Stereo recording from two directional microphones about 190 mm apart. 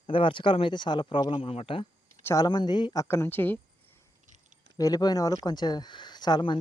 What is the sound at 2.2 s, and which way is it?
Speech, 20° left (ahead or behind).